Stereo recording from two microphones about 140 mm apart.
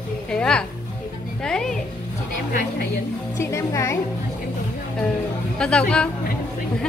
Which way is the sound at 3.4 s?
20° left (ahead or behind).